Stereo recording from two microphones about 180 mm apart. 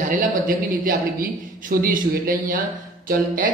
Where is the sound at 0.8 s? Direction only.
50° right (ahead or behind).